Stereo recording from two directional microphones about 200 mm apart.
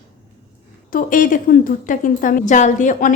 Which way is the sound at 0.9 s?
45° left (ahead or behind).